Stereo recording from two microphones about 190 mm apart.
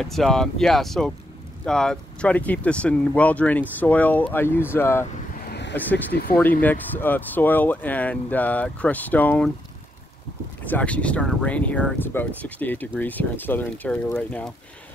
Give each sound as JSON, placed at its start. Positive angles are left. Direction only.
{"t": 0.0, "sound": "speech", "side_deg": 0}
{"t": 5.4, "sound": "vehicle", "side_deg": 60}
{"t": 5.8, "sound": "speech", "side_deg": 10}
{"t": 10.6, "sound": "speech", "side_deg": 5}